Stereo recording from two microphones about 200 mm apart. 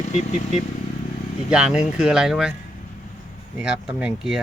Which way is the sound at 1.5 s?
5° right (ahead or behind).